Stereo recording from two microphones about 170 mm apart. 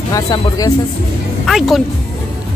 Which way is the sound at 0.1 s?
20° left (ahead or behind).